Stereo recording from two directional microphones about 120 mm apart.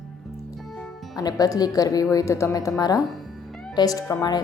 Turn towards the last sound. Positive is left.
turn(degrees=30)  # may be behind; listen again after turning